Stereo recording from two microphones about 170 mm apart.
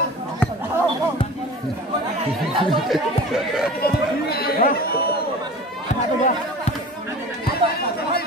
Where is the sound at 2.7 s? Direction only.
Centre (ahead or behind).